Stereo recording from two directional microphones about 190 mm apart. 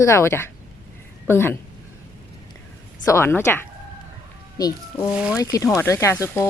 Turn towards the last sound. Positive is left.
turn(degrees=15)  # may be behind; listen again after turning